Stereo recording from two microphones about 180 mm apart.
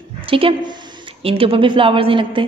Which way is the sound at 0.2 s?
30° right (ahead or behind).